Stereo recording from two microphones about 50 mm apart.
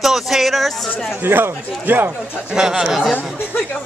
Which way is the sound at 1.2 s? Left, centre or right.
Right.